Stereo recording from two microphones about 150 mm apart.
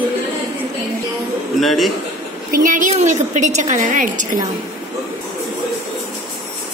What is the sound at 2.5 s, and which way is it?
Speech, 60° right (ahead or behind).